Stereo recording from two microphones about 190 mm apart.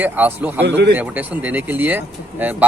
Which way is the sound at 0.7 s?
60° right (ahead or behind).